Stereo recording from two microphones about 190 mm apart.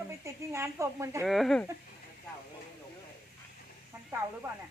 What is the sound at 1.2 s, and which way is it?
Speech, centre (ahead or behind).